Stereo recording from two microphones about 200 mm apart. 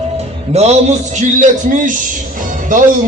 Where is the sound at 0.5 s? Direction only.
30° right (ahead or behind).